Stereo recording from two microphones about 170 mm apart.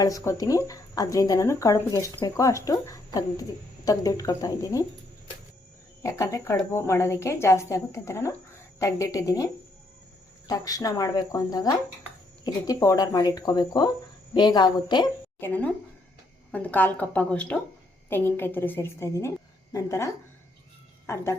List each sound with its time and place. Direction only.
0.0 s speech: 20° left (ahead or behind)
6.0 s speech: 20° left (ahead or behind)
15.4 s speech: 10° left (ahead or behind)